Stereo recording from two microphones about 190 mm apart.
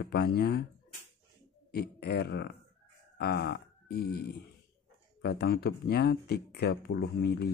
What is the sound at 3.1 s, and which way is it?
Grunt, 60° left (ahead or behind).